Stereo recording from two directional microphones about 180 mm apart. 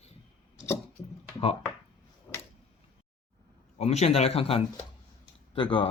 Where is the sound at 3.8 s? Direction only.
35° left (ahead or behind).